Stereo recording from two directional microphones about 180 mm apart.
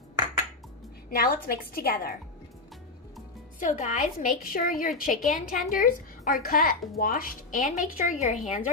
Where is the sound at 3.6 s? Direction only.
45° left (ahead or behind).